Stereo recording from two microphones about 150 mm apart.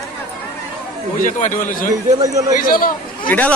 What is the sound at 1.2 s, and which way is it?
Speech, 60° left (ahead or behind).